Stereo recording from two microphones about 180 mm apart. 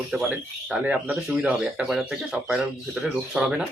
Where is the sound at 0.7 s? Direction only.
5° right (ahead or behind).